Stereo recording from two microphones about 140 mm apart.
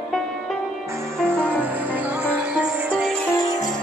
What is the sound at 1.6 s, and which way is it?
Music, 10° right (ahead or behind).